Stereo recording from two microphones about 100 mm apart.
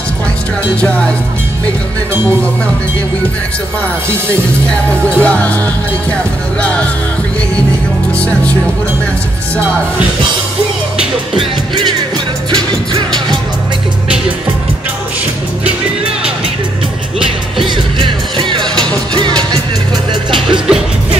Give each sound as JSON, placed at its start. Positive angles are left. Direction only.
{"t": 4.6, "sound": "speech", "side_deg": 15}
{"t": 6.6, "sound": "speech", "side_deg": 10}
{"t": 11.3, "sound": "music", "side_deg": -50}
{"t": 17.6, "sound": "music", "side_deg": -55}